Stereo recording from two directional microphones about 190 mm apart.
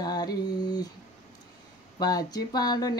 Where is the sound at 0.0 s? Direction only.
20° left (ahead or behind).